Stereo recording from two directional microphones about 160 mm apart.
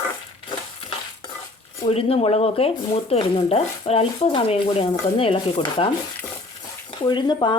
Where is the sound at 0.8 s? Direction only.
35° left (ahead or behind).